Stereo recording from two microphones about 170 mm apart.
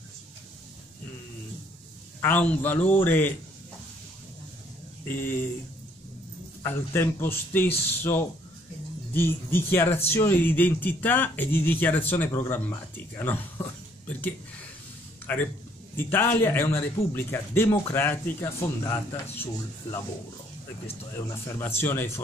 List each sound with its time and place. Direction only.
2.2 s speech: 10° left (ahead or behind)
5.0 s speech: 55° left (ahead or behind)
6.6 s speech: 10° left (ahead or behind)
15.3 s speech: 10° left (ahead or behind)
21.3 s speech: 15° left (ahead or behind)